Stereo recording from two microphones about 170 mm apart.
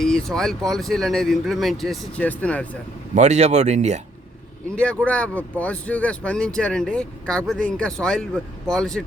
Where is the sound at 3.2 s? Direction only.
40° right (ahead or behind).